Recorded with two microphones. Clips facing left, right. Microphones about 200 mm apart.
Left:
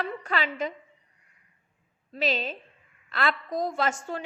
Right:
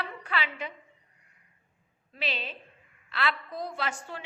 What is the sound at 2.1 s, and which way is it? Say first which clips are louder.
A woman's voice: left 7 dB; 45° left (ahead or behind).